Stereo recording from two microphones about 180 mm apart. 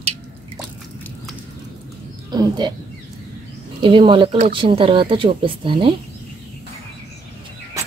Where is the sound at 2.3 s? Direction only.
25° right (ahead or behind).